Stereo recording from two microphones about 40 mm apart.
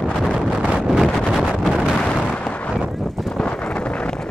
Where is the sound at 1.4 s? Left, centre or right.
Centre.